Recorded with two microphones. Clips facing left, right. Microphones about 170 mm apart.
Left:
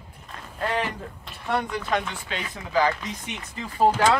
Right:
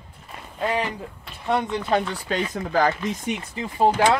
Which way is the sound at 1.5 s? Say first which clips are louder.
Right 4 dB; 25° right (ahead or behind).